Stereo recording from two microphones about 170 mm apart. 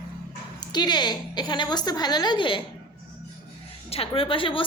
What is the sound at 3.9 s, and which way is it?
Speech, 35° left (ahead or behind).